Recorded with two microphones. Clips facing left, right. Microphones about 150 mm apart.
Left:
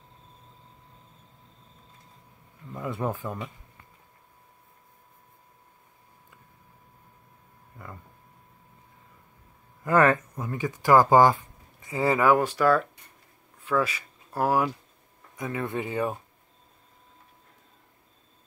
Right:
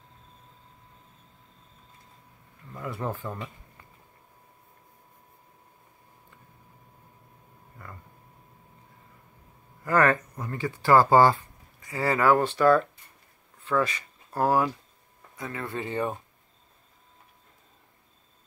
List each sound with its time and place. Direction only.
2.7 s speech: 20° left (ahead or behind)
9.8 s speech: 20° left (ahead or behind)